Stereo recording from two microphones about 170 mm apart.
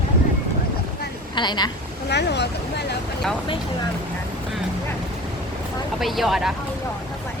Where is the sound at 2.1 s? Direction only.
90° left.